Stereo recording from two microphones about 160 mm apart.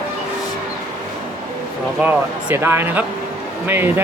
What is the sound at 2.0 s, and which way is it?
Speech, 10° right (ahead or behind).